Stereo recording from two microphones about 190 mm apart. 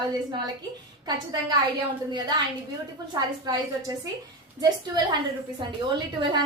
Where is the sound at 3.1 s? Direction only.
20° right (ahead or behind).